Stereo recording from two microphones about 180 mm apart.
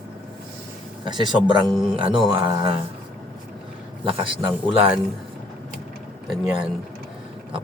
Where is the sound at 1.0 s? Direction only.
25° right (ahead or behind).